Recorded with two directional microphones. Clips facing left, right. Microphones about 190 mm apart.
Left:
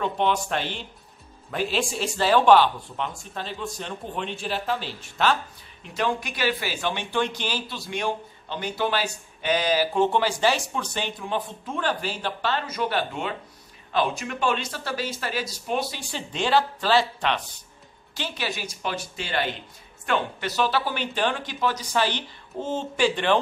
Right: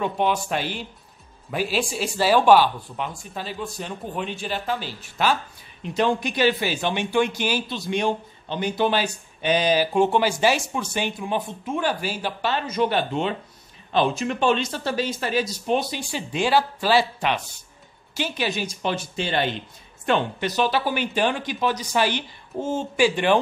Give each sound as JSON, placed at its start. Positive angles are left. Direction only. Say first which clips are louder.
{"t": 0.0, "sound": "a man's voice", "louder": "right 1 dB", "side_deg": -5}
{"t": 5.9, "sound": "a man's voice", "louder": "right 5 dB", "side_deg": -25}